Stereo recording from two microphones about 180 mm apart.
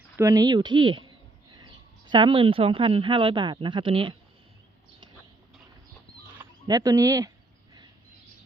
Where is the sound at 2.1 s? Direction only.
30° right (ahead or behind).